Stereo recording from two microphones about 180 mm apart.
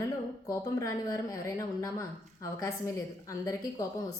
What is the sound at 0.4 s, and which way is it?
A woman's voice, 15° left (ahead or behind).